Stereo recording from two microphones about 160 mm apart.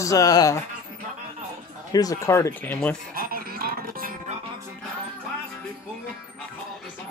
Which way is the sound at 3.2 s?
65° right (ahead or behind).